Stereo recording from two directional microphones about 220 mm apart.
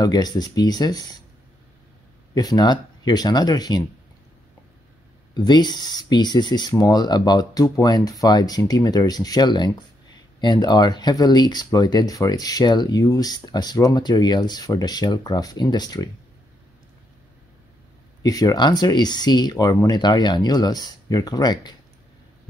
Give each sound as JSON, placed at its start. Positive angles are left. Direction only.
{"t": 0.0, "sound": "speech", "side_deg": 20}
{"t": 2.3, "sound": "speech", "side_deg": 15}
{"t": 5.3, "sound": "speech", "side_deg": 20}
{"t": 18.2, "sound": "speech", "side_deg": 15}